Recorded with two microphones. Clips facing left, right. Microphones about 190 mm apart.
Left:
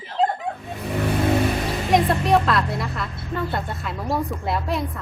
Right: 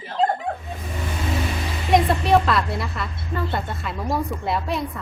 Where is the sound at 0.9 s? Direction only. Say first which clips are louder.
Left 9 dB; 65° left (ahead or behind).